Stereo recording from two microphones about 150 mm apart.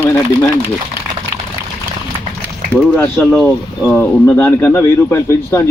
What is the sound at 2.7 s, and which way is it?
Speech, 10° left (ahead or behind).